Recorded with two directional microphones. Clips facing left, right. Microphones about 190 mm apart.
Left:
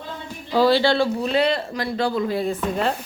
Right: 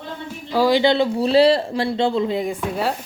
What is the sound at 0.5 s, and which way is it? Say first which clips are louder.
Speech: right 1 dB; 15° right (ahead or behind).